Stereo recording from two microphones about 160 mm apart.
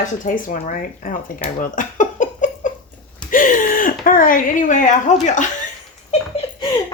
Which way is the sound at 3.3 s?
55° left (ahead or behind).